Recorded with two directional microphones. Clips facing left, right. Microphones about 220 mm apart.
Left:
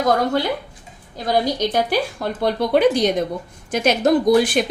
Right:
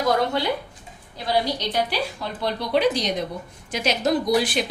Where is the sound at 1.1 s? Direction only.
45° left (ahead or behind).